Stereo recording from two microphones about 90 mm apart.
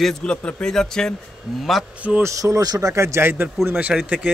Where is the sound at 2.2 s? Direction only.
40° right (ahead or behind).